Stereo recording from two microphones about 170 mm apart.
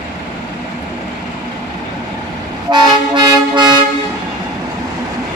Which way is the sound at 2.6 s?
25° right (ahead or behind).